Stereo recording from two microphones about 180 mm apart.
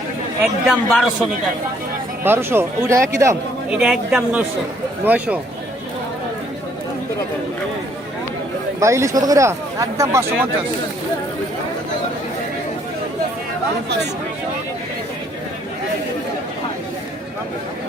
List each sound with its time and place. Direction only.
0.4 s a man's voice: centre (ahead or behind)
2.2 s speech: 10° right (ahead or behind)
3.7 s a man's voice: 5° right (ahead or behind)
8.8 s speech: 15° right (ahead or behind)